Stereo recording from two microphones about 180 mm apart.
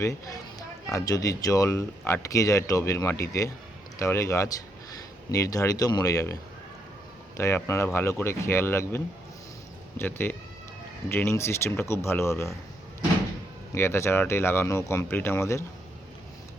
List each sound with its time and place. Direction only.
0.9 s speech: 20° left (ahead or behind)
7.3 s speech: 15° left (ahead or behind)
10.0 s speech: 10° left (ahead or behind)
13.7 s speech: 15° left (ahead or behind)